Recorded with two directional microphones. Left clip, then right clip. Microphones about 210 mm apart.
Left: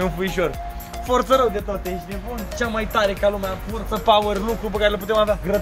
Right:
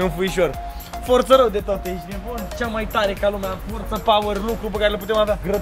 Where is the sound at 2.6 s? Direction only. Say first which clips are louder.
Left 1 dB; 10° left (ahead or behind).